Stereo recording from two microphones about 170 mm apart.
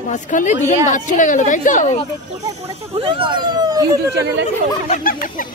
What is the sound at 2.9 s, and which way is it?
Speech, 30° right (ahead or behind).